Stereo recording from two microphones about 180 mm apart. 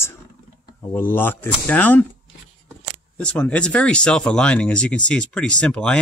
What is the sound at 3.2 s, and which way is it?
Speech, 5° left (ahead or behind).